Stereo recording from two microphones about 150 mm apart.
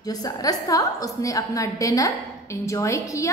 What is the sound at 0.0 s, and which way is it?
A woman's voice, 25° left (ahead or behind).